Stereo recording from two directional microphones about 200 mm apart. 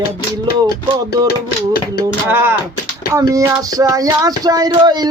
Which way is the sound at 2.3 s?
10° right (ahead or behind).